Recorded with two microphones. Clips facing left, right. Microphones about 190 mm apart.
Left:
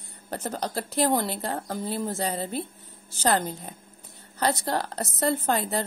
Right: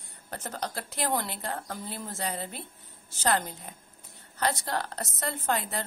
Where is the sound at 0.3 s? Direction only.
30° left (ahead or behind).